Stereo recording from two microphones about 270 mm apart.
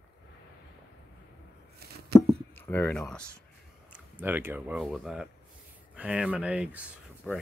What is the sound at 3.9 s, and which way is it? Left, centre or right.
Speech, centre.